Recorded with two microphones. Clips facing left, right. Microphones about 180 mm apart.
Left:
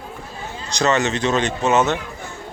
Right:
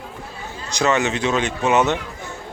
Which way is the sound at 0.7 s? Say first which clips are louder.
Even; 10° right (ahead or behind).